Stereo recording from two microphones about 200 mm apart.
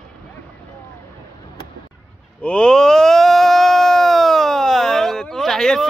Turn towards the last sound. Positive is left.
turn(degrees=0)  # may be behind; listen again after turning